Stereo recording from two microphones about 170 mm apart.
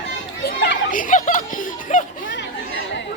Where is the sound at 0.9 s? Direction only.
50° left (ahead or behind).